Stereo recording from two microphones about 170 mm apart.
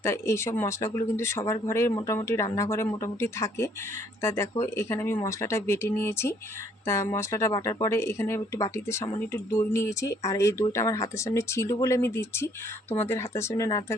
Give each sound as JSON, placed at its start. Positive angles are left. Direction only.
{"t": 0.0, "sound": "speech", "side_deg": 15}